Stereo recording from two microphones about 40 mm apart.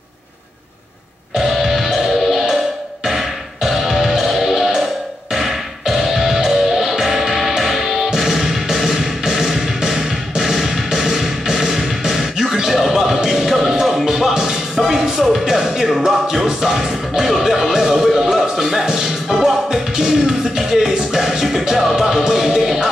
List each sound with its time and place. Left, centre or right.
1.5 s music: centre